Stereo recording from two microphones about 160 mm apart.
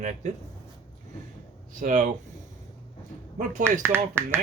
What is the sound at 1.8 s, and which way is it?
Speech, 50° right (ahead or behind).